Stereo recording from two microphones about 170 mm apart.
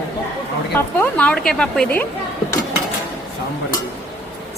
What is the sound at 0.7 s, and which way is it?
A woman's voice, 10° left (ahead or behind).